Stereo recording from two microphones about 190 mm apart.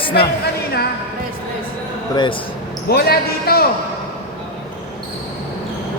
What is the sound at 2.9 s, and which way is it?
Speech, 55° left (ahead or behind).